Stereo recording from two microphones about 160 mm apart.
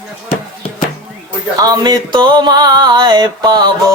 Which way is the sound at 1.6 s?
25° right (ahead or behind).